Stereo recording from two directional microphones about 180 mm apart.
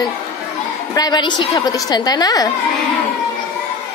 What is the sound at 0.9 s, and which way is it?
A woman's voice, 20° left (ahead or behind).